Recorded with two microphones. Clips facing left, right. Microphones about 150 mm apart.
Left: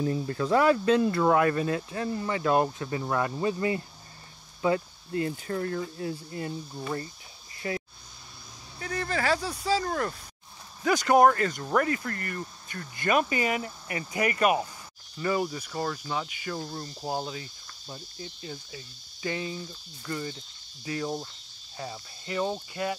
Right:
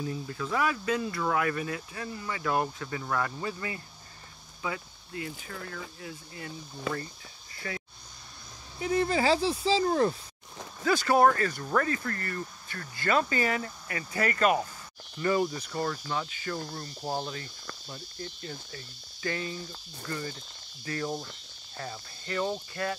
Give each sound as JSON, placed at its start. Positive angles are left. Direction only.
{"t": 0.0, "sound": "speech", "side_deg": 50}
{"t": 1.2, "sound": "speech", "side_deg": 30}
{"t": 4.6, "sound": "speech", "side_deg": 40}
{"t": 7.6, "sound": "speech", "side_deg": 30}
{"t": 8.7, "sound": "speech", "side_deg": -20}
{"t": 10.8, "sound": "speech", "side_deg": 15}